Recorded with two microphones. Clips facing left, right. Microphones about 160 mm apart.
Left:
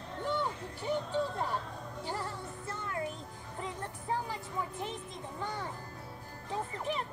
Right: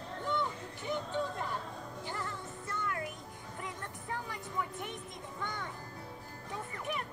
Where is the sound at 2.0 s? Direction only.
30° left (ahead or behind).